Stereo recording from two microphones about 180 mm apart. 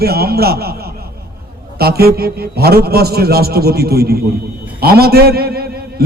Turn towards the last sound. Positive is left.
turn(degrees=-60)  # may be behind; listen again after turning